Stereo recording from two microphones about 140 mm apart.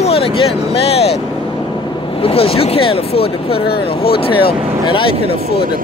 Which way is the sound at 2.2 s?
45° left (ahead or behind).